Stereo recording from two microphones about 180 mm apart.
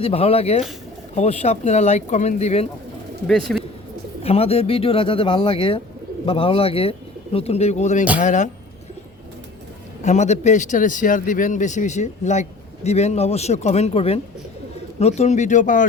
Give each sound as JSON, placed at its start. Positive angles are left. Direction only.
{"t": 0.0, "sound": "speech", "side_deg": 35}
{"t": 3.5, "sound": "bird", "side_deg": 5}
{"t": 4.2, "sound": "speech", "side_deg": 35}
{"t": 10.0, "sound": "speech", "side_deg": 40}